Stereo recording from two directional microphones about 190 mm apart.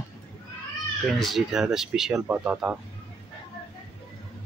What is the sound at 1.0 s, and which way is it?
Speech, centre (ahead or behind).